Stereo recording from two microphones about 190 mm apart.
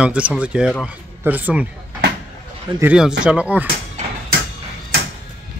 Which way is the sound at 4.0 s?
35° right (ahead or behind).